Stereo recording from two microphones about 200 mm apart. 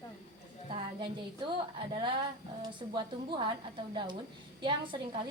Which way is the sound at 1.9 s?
25° right (ahead or behind).